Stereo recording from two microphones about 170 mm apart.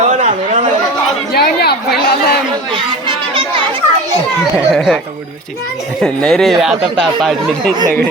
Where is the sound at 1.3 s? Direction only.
70° left (ahead or behind).